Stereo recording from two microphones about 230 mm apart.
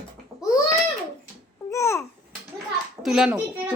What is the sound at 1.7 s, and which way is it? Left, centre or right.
Babbling, centre.